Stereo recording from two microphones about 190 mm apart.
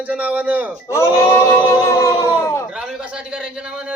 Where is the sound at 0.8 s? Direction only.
15° left (ahead or behind).